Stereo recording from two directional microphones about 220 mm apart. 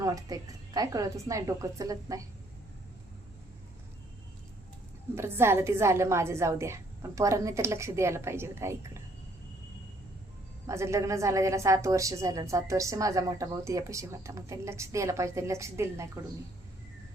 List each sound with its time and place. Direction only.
0.0 s a woman's voice: 15° right (ahead or behind)
5.1 s a woman's voice: 10° right (ahead or behind)
10.7 s a woman's voice: 15° right (ahead or behind)